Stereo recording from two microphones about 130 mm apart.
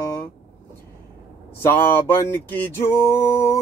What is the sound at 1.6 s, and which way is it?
Male singing, 15° left (ahead or behind).